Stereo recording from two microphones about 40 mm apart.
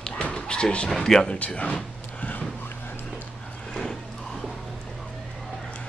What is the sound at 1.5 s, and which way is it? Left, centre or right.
Vehicle, left.